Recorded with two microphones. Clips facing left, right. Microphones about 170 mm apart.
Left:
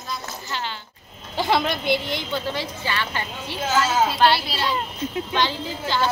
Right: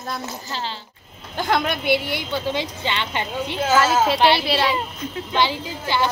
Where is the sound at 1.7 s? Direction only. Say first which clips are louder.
Right 2 dB; 60° right (ahead or behind).